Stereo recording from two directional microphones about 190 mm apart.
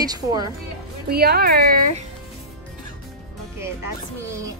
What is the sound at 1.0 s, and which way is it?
Speech, 55° right (ahead or behind).